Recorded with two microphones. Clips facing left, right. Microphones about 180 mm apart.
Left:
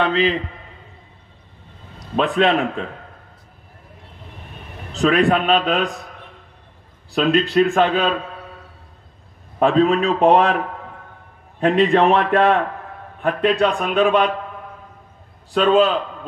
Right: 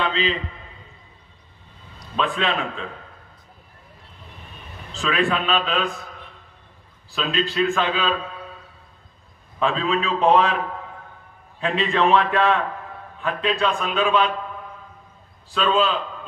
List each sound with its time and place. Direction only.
0.0 s a sound: 60° left (ahead or behind)
2.1 s a man's voice: 50° left (ahead or behind)
5.1 s a man's voice: 45° left (ahead or behind)
7.2 s a man's voice: 55° left (ahead or behind)
9.6 s a man's voice: 55° left (ahead or behind)
11.7 s a man's voice: 55° left (ahead or behind)
15.5 s a man's voice: 55° left (ahead or behind)